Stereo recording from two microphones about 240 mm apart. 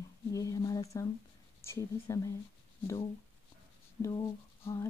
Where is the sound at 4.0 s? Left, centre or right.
Centre.